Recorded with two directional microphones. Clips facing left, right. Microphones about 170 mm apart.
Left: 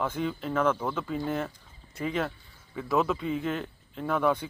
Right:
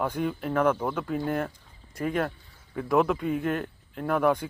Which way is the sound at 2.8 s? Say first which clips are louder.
Right 3 dB; 15° right (ahead or behind).